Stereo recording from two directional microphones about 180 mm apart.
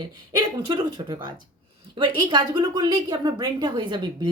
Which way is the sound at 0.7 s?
25° right (ahead or behind).